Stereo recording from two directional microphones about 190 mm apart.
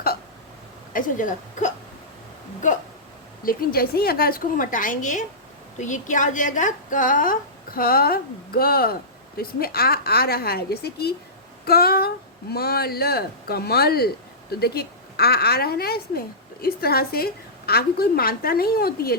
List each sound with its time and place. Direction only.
0.9 s a woman's voice: 45° left (ahead or behind)
3.4 s a woman's voice: 50° left (ahead or behind)